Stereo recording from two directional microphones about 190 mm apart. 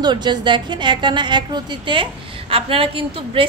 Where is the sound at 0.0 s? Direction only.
25° right (ahead or behind).